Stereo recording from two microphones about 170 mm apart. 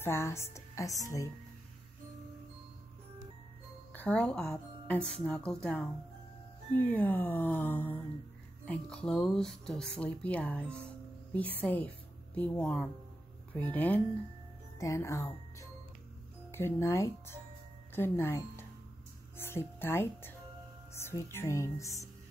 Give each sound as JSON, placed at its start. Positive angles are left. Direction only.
{"t": 0.0, "sound": "a woman's voice", "side_deg": 15}
{"t": 3.9, "sound": "a woman's voice", "side_deg": 10}
{"t": 16.5, "sound": "a woman's voice", "side_deg": 15}